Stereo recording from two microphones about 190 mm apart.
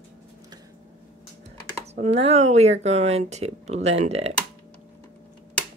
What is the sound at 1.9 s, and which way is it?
Speech, 35° right (ahead or behind).